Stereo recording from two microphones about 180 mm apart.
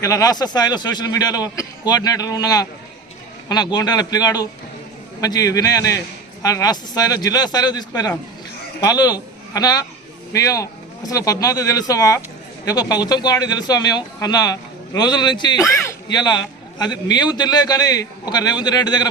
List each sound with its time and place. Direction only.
0.0 s a man's voice: 20° left (ahead or behind)